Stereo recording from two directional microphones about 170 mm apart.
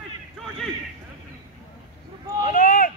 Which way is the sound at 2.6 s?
50° left (ahead or behind).